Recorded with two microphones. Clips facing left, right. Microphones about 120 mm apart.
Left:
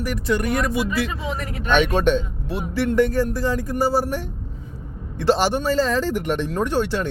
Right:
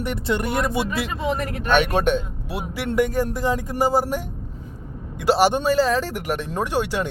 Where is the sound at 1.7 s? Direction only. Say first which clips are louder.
Left 1 dB; 10° right (ahead or behind).